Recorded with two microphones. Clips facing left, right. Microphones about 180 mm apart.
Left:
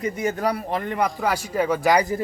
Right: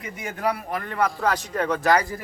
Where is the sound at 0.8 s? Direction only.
15° left (ahead or behind).